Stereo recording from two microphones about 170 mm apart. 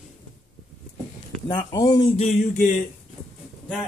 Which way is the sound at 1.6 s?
20° left (ahead or behind).